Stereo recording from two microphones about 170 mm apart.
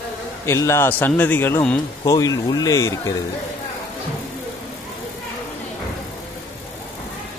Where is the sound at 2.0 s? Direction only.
20° left (ahead or behind).